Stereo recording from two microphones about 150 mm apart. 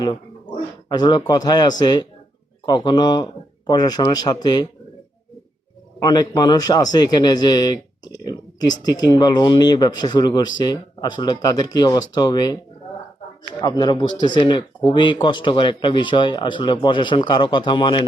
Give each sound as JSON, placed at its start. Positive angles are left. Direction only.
{"t": 0.0, "sound": "speech", "side_deg": 30}
{"t": 6.0, "sound": "speech", "side_deg": 25}
{"t": 13.6, "sound": "speech", "side_deg": 30}